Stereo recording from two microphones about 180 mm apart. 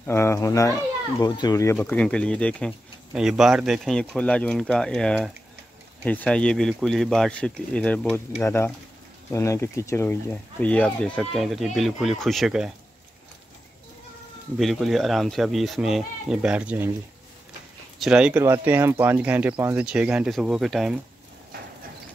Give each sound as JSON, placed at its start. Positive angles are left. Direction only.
{"t": 0.0, "sound": "speech", "side_deg": 15}
{"t": 14.6, "sound": "speech", "side_deg": 0}
{"t": 17.9, "sound": "speech", "side_deg": -5}